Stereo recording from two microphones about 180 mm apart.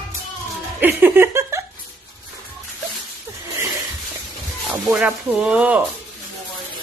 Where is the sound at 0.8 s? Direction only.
10° right (ahead or behind).